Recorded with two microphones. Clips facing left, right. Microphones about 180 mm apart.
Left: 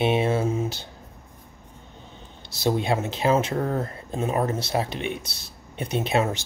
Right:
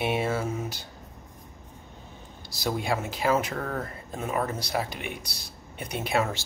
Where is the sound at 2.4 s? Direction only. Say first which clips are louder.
Left 5 dB; 25° left (ahead or behind).